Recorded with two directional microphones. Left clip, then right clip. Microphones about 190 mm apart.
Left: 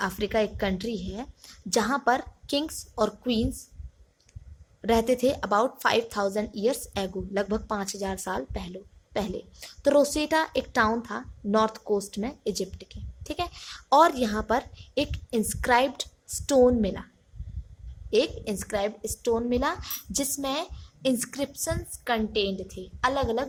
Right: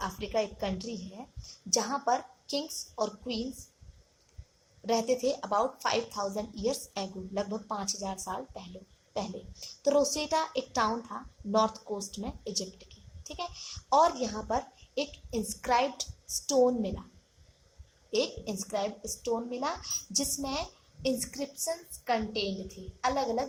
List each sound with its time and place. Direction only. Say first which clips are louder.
0.0 s a woman's voice: left 5 dB; 45° left (ahead or behind)
4.9 s a woman's voice: left 5 dB; 50° left (ahead or behind)
18.1 s a woman's voice: left 6 dB; 45° left (ahead or behind)